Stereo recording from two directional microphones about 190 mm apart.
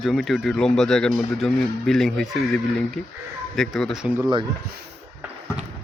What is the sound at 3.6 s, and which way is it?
Speech, centre (ahead or behind).